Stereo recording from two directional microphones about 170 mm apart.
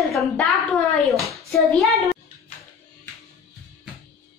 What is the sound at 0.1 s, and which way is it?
Speech, centre (ahead or behind).